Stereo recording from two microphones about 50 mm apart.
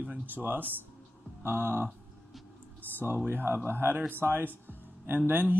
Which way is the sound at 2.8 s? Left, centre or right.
Right.